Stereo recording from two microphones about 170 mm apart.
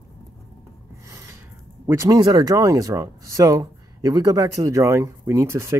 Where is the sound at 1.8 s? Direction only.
15° right (ahead or behind).